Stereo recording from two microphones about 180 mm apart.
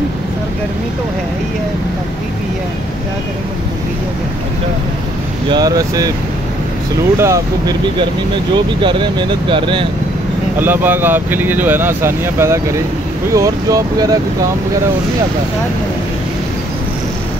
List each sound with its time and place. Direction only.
5.5 s speech: 20° right (ahead or behind)
7.2 s speech: 15° right (ahead or behind)
8.8 s speech: 25° right (ahead or behind)
10.6 s speech: 10° right (ahead or behind)